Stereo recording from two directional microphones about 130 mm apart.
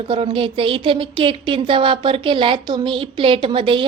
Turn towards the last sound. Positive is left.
turn(degrees=-40)  # may be behind; listen again after turning